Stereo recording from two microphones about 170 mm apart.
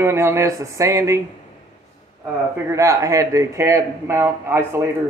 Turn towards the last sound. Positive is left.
turn(degrees=-15)  # may be behind; listen again after turning